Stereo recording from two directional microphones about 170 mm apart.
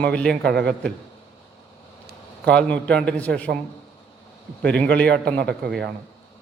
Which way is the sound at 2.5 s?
5° left (ahead or behind).